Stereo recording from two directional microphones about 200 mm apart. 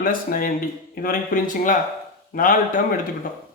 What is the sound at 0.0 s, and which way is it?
Speech, 45° left (ahead or behind).